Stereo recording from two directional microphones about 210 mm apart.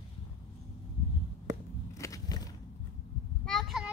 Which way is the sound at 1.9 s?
15° left (ahead or behind).